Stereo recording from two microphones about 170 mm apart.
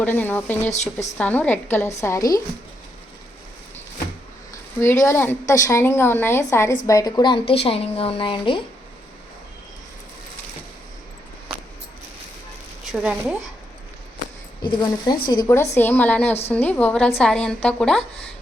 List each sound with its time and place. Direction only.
0.0 s a woman's voice: 10° left (ahead or behind)
5.0 s a woman's voice: 15° left (ahead or behind); by 8.6 s 30° left (ahead or behind)
11.5 s a sound: 5° right (ahead or behind)
12.8 s a woman's voice: 5° right (ahead or behind)
14.6 s a woman's voice: 25° left (ahead or behind); by 18.0 s 5° left (ahead or behind)